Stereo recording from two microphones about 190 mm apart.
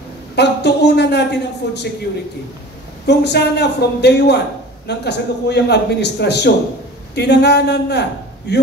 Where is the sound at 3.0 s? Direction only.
60° left (ahead or behind).